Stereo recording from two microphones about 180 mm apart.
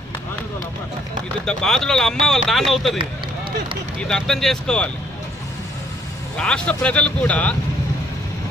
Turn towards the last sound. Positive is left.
turn(degrees=5)  # may be behind; listen again after turning